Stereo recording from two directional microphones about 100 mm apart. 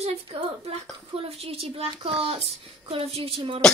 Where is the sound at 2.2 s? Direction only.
80° right; by 3.6 s 60° right (ahead or behind).